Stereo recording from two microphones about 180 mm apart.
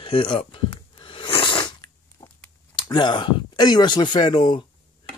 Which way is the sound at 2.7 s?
25° left (ahead or behind).